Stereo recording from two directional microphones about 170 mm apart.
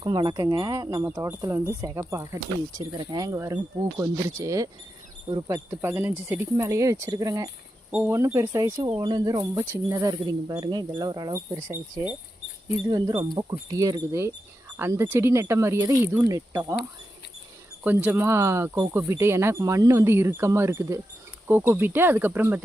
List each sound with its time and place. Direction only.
0.0 s speech: 25° right (ahead or behind)
17.8 s speech: 10° right (ahead or behind)